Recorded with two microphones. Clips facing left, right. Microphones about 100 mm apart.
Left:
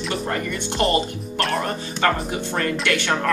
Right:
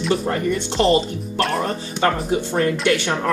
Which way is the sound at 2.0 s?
25° right (ahead or behind).